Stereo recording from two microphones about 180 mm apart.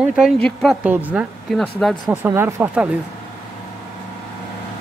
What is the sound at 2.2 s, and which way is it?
Speech, 10° right (ahead or behind).